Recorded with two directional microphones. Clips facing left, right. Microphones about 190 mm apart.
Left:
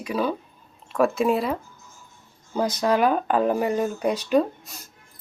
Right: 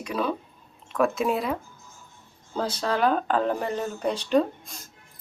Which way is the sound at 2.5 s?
15° left (ahead or behind).